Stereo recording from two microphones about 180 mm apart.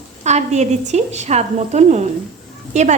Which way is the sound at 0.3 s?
40° right (ahead or behind).